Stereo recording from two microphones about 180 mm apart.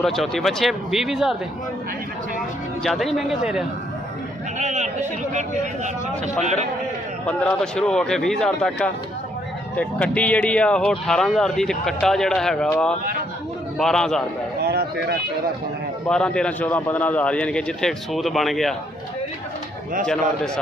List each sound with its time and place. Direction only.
0.0 s speech: centre (ahead or behind)
2.8 s speech: centre (ahead or behind)
4.6 s speech: 40° right (ahead or behind)
7.2 s speech: 5° left (ahead or behind)
14.6 s a sound: 60° right (ahead or behind)
16.1 s speech: 5° left (ahead or behind)